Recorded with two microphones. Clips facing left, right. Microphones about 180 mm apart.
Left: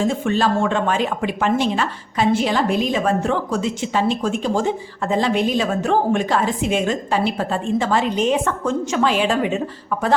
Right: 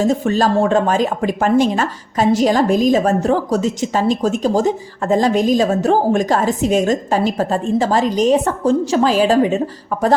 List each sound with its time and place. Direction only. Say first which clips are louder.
0.0 s a woman's voice: right 3 dB; 40° right (ahead or behind)